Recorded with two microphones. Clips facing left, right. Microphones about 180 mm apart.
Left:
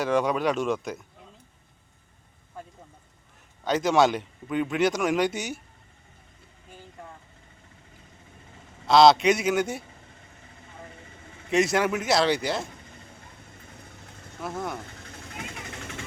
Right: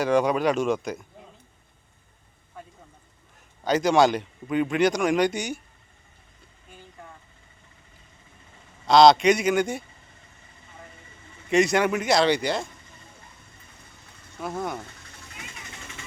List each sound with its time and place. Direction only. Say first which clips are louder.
0.0 s speech: right 3 dB; centre (ahead or behind)
3.6 s speech: right 2 dB; centre (ahead or behind)
8.9 s speech: right 2 dB; centre (ahead or behind)
11.5 s speech: right 2 dB; centre (ahead or behind)
15.3 s vehicle: left 6 dB; 55° left (ahead or behind)